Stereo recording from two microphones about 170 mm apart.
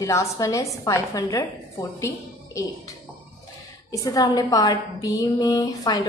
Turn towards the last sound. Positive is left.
turn(degrees=20)  # may be behind; listen again after turning